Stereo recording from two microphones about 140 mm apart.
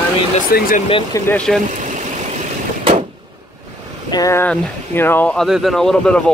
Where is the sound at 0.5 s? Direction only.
85° left.